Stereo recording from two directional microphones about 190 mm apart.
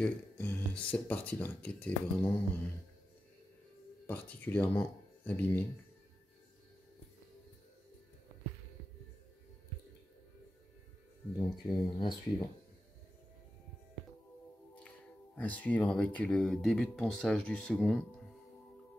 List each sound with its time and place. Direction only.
0.0 s speech: 10° left (ahead or behind)
4.1 s speech: 10° left (ahead or behind)
11.3 s speech: 20° left (ahead or behind)
15.3 s speech: 10° left (ahead or behind)